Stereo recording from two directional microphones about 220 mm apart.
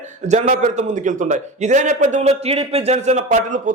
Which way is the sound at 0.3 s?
30° right (ahead or behind).